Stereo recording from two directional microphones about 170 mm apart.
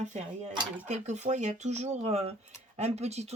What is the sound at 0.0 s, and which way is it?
Speech, 45° right (ahead or behind).